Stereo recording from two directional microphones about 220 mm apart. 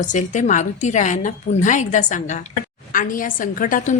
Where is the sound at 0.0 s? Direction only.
35° left (ahead or behind).